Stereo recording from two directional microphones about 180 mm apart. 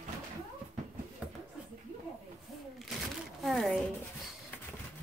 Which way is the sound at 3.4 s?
Centre (ahead or behind).